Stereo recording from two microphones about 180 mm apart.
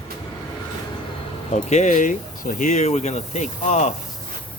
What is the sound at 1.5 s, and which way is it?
Speech, 40° left (ahead or behind).